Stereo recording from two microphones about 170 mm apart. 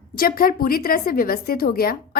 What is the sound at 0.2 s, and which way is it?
A woman's voice, 60° left (ahead or behind).